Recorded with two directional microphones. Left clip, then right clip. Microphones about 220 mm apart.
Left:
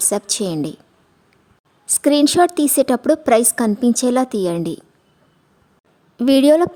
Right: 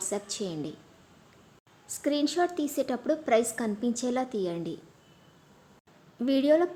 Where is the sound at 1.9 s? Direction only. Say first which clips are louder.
Left 14 dB; 50° left (ahead or behind).